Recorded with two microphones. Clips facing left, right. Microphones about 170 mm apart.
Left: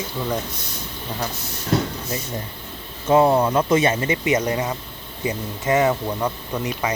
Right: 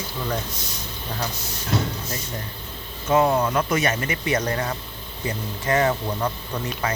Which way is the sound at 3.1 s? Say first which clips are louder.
Left 3 dB; 30° left (ahead or behind).